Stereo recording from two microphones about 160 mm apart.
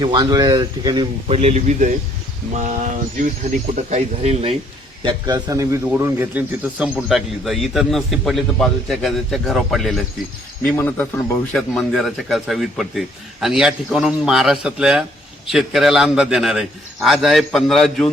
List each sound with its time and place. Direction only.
0.0 s speech: 25° right (ahead or behind)
1.3 s speech: 40° right (ahead or behind)
5.0 s a man's voice: 25° right (ahead or behind); by 18.1 s centre (ahead or behind)